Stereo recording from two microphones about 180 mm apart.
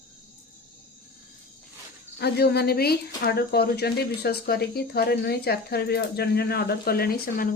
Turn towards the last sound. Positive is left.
turn(degrees=55)  # may be behind; listen again after turning